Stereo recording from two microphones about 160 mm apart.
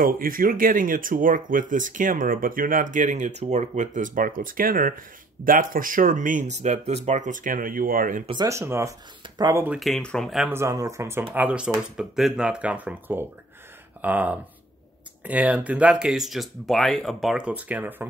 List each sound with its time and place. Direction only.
0.0 s speech: 60° right (ahead or behind)
8.3 s speech: 20° right (ahead or behind)
9.8 s speech: centre (ahead or behind)
10.5 s speech: 20° right (ahead or behind)